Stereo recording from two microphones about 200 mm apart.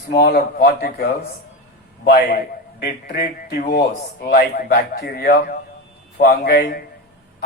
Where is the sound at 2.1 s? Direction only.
50° left (ahead or behind).